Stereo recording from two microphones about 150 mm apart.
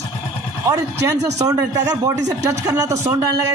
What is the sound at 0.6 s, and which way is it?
Speech, 20° right (ahead or behind).